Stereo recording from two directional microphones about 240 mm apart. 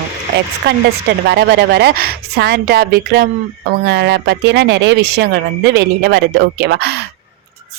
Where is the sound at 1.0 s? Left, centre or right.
Right.